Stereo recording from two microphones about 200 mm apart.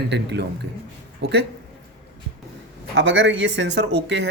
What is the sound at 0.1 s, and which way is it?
Speech, 60° right (ahead or behind).